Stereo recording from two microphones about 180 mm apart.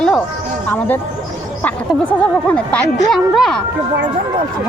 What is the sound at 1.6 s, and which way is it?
Speech, 10° left (ahead or behind).